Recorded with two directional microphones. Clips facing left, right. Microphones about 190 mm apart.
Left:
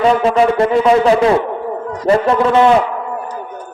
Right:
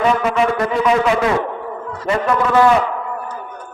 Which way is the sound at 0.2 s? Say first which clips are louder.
Left 5 dB; 30° left (ahead or behind).